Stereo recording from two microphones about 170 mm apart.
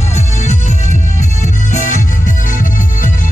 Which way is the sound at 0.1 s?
45° left (ahead or behind).